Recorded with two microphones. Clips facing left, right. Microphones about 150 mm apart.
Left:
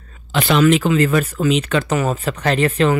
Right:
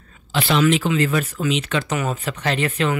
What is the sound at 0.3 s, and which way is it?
Speech, 50° left (ahead or behind).